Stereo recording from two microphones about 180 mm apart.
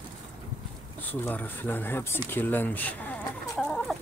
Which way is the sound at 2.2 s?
10° left (ahead or behind).